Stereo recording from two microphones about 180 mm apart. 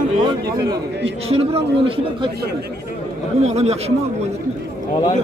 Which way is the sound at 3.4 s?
35° right (ahead or behind).